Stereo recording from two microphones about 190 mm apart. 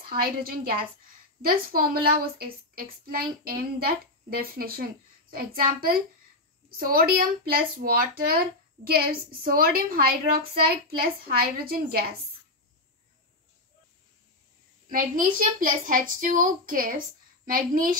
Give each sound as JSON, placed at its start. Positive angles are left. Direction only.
{"t": 0.1, "sound": "speech", "side_deg": -50}
{"t": 14.9, "sound": "speech", "side_deg": -45}